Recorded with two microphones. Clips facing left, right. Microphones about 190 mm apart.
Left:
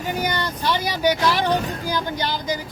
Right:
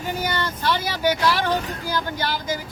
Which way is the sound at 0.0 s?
15° left (ahead or behind).